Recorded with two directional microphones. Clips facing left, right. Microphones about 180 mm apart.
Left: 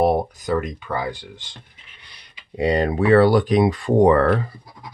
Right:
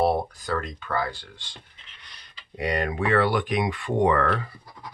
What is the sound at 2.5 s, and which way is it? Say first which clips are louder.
Speech: left 7 dB; 30° left (ahead or behind).